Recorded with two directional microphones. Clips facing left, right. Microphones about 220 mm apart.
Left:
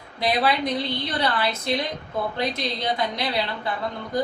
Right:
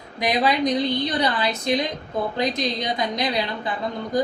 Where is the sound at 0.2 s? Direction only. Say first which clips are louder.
Right 2 dB; 15° right (ahead or behind).